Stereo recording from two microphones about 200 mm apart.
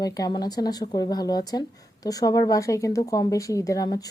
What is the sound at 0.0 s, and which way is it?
Speech, 20° left (ahead or behind).